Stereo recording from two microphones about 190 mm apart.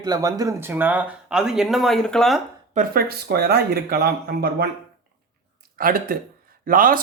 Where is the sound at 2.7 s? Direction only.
50° right (ahead or behind).